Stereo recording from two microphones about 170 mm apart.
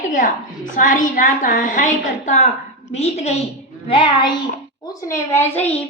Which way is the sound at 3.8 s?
30° left (ahead or behind).